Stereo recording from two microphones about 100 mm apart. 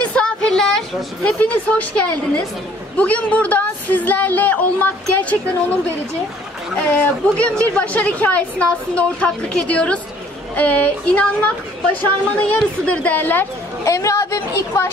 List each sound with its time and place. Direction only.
0.0 s a sound: 10° left (ahead or behind)
1.4 s a woman's voice: 15° left (ahead or behind)
3.0 s a woman's voice: 15° left (ahead or behind)
7.0 s a woman's voice: 15° left (ahead or behind)
13.8 s a woman's voice: 30° left (ahead or behind)